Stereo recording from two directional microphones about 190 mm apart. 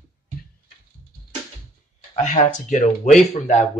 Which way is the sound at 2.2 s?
40° left (ahead or behind).